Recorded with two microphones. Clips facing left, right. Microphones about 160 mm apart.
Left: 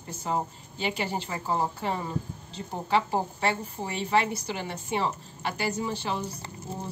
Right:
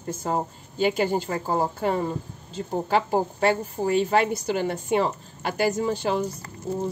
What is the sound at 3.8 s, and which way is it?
A woman's voice, 45° right (ahead or behind).